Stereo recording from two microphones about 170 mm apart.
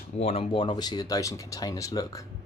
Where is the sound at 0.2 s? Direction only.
35° left (ahead or behind).